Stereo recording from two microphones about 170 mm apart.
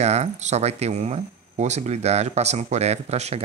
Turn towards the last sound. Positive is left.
turn(degrees=-40)  # may be behind; listen again after turning